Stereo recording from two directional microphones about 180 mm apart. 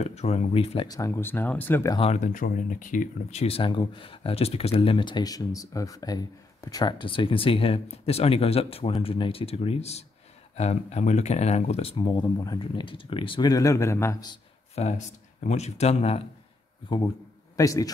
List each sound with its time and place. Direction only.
0.0 s speech: 35° left (ahead or behind)
0.8 s speech: 20° left (ahead or behind)
2.0 s speech: 40° left (ahead or behind); by 14.3 s 15° left (ahead or behind)
14.3 s a sound: 35° left (ahead or behind)
15.4 s speech: 35° left (ahead or behind)
17.6 s speech: 20° left (ahead or behind)